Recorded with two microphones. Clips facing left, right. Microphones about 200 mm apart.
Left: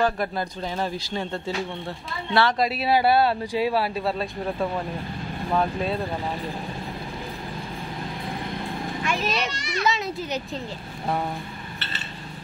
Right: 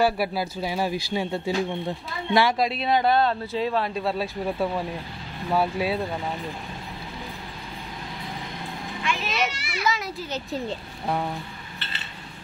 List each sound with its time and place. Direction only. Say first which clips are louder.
0.0 s speech: right 1 dB; 5° right (ahead or behind)
2.6 s speech: left 1 dB; 5° left (ahead or behind)
9.0 s children playing: left 2 dB; 40° left (ahead or behind)
9.5 s children playing: left 4 dB; 5° right (ahead or behind)
9.8 s a child's voice: left 1 dB; 25° left (ahead or behind)